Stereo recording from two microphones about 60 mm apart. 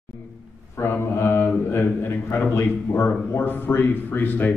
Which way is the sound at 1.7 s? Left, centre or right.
Left.